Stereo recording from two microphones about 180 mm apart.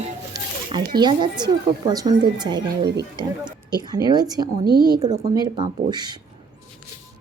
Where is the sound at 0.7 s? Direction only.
25° right (ahead or behind).